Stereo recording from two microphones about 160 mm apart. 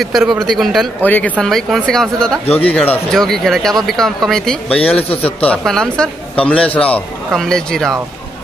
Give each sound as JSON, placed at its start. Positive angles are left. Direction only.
{"t": 0.0, "sound": "speech", "side_deg": 0}
{"t": 1.0, "sound": "a man's voice", "side_deg": 10}
{"t": 2.4, "sound": "speech", "side_deg": 40}
{"t": 2.7, "sound": "a man's voice", "side_deg": 10}